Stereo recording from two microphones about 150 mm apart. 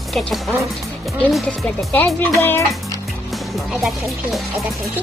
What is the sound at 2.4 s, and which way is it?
Speech, 20° left (ahead or behind).